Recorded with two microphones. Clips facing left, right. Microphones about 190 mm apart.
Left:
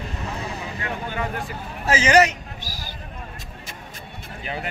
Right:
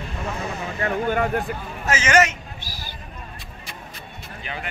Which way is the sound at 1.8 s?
35° left (ahead or behind).